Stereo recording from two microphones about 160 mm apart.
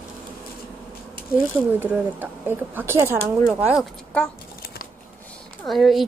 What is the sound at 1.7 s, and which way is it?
Speech, 10° right (ahead or behind).